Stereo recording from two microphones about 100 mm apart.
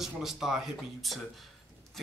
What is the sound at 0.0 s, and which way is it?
Speech, 5° right (ahead or behind).